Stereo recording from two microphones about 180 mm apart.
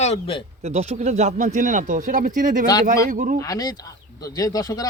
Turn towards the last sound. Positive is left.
turn(degrees=20)  # may be behind; listen again after turning